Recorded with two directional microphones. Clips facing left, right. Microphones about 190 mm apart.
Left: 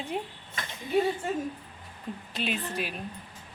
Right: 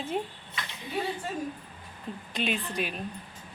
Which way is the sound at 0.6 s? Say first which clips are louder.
Even; 45° left (ahead or behind).